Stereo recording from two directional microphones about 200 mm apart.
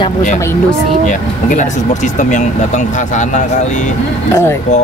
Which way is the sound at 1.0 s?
40° left (ahead or behind).